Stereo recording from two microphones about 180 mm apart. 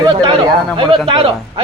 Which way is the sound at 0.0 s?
25° right (ahead or behind).